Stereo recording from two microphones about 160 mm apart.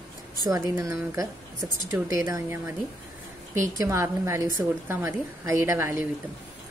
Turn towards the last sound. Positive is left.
turn(degrees=-15)  # may be behind; listen again after turning